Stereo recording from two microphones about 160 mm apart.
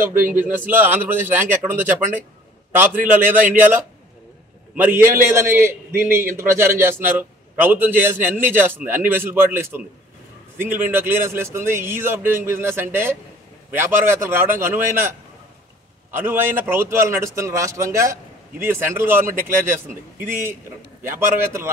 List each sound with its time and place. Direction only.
0.0 s a man's voice: 15° right (ahead or behind)